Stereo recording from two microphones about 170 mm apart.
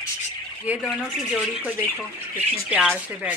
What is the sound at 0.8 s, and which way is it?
Speech, 5° right (ahead or behind).